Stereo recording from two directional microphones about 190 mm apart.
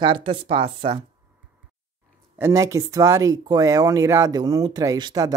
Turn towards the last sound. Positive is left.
turn(degrees=-20)  # may be behind; listen again after turning